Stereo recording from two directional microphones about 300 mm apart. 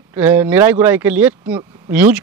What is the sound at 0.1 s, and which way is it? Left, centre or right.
Speech, centre.